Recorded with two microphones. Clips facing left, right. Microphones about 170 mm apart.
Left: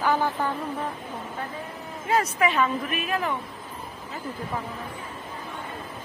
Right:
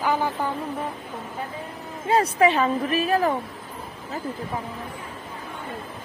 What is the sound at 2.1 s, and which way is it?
A woman's voice, 30° right (ahead or behind).